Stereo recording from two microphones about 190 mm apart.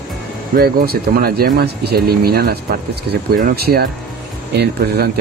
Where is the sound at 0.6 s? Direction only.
55° right (ahead or behind).